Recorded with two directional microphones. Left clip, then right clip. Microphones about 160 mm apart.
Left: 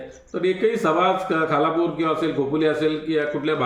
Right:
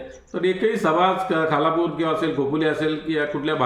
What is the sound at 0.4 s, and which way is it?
A man's voice, 15° right (ahead or behind).